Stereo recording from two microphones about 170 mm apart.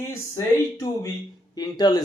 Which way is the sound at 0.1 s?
15° left (ahead or behind).